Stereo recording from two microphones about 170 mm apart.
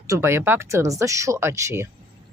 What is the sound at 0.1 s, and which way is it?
Speech, 15° right (ahead or behind).